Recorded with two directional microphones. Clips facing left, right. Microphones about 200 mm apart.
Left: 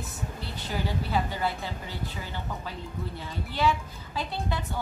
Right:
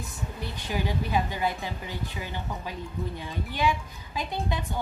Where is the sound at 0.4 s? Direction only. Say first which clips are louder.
Right 2 dB; 15° right (ahead or behind).